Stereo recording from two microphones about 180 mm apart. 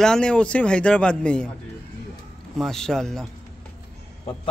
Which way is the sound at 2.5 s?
Centre (ahead or behind).